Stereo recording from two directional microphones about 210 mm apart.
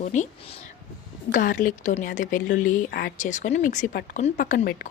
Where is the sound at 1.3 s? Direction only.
40° left (ahead or behind).